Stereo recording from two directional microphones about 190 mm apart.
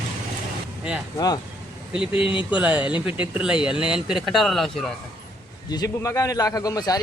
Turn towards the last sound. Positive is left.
turn(degrees=20)  # may be behind; listen again after turning